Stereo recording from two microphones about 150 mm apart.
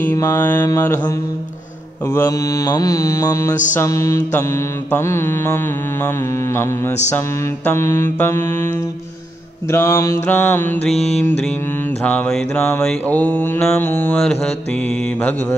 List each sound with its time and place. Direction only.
0.0 s mantra: 15° left (ahead or behind)
2.1 s mantra: 20° left (ahead or behind)
9.7 s mantra: 20° left (ahead or behind)